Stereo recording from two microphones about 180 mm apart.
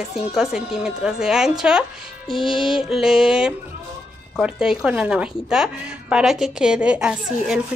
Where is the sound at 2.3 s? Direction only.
25° left (ahead or behind).